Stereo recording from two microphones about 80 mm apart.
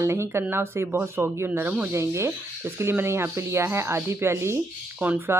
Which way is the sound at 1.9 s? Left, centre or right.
Right.